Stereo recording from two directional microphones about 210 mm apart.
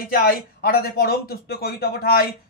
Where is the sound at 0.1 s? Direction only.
45° left (ahead or behind).